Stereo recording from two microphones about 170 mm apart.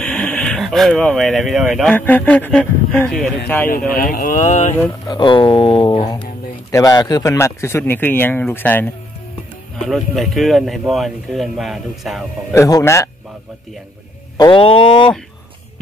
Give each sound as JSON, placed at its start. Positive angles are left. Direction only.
{"t": 0.0, "sound": "speech", "side_deg": 5}
{"t": 3.9, "sound": "speech", "side_deg": 55}
{"t": 5.0, "sound": "speech", "side_deg": 25}
{"t": 9.8, "sound": "speech", "side_deg": 0}
{"t": 12.5, "sound": "speech", "side_deg": 20}
{"t": 14.3, "sound": "speech", "side_deg": 25}